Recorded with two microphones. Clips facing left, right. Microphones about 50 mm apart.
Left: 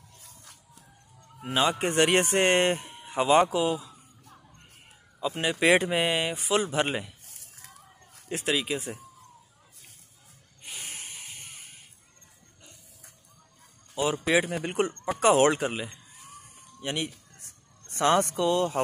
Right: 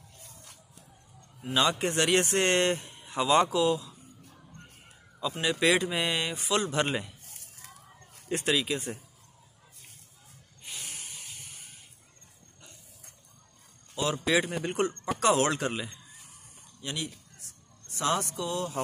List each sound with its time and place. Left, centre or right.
1.6 s speech: centre
1.9 s speech: left
5.2 s speech: left
6.0 s speech: centre
8.3 s speech: centre
10.8 s a sound: left
13.9 s speech: centre
15.6 s speech: centre
16.8 s speech: left